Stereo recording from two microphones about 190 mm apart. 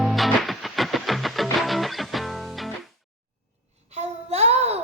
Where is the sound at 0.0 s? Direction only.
Centre (ahead or behind).